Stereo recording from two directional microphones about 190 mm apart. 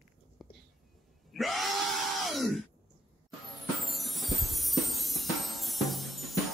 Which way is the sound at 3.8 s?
Centre (ahead or behind).